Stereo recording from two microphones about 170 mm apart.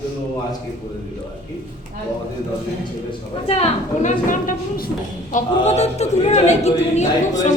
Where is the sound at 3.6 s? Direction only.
45° left (ahead or behind).